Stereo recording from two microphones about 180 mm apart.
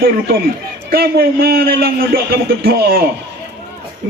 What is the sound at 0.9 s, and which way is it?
A man's voice, 60° right (ahead or behind).